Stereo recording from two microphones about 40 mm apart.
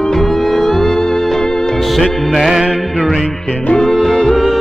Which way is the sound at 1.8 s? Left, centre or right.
Centre.